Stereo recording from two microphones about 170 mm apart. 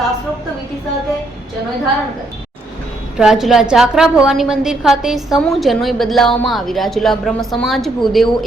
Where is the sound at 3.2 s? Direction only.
Centre (ahead or behind).